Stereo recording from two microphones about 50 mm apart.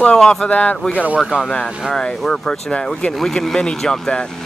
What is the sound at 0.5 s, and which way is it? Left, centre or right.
Speech, left.